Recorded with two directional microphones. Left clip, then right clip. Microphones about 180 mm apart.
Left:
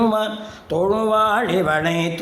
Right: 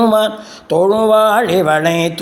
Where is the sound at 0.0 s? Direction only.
35° right (ahead or behind).